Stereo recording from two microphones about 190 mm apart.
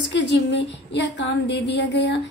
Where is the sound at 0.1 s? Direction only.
65° left (ahead or behind).